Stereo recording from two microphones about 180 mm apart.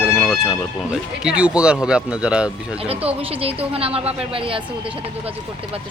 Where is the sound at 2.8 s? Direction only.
30° right (ahead or behind).